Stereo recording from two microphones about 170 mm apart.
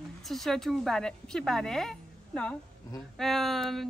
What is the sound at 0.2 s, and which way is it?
A woman's voice, centre (ahead or behind).